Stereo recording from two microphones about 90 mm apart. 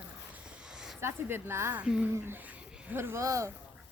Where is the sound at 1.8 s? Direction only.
10° right (ahead or behind).